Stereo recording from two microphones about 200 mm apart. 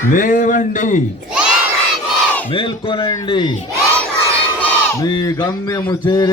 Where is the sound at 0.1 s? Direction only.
45° left (ahead or behind).